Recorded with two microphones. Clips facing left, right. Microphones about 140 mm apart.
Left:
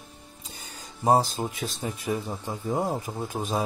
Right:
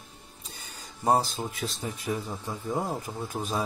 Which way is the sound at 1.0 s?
20° left (ahead or behind).